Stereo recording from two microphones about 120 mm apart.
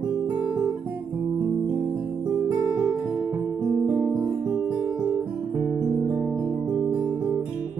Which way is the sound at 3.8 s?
15° right (ahead or behind).